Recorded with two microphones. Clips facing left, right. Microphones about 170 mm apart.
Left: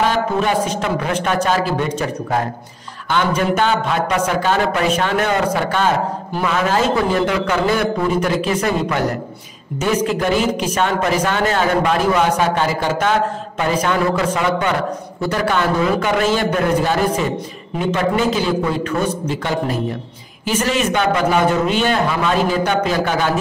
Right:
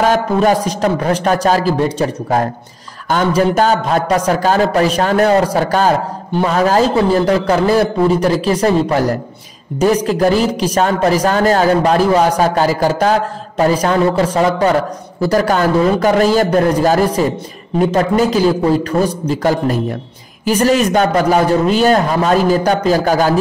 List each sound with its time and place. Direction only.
0.1 s a man's voice: 40° right (ahead or behind)
10.0 s a man's voice: 35° right (ahead or behind)